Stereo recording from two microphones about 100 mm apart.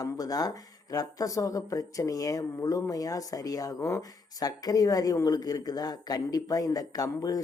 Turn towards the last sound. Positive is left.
turn(degrees=35)  # may be behind; listen again after turning